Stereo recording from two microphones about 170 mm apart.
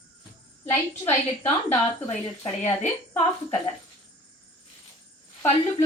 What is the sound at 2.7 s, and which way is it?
Speech, 15° left (ahead or behind).